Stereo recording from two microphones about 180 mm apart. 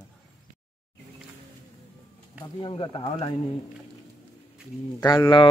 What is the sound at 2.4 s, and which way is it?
Speech, 30° left (ahead or behind).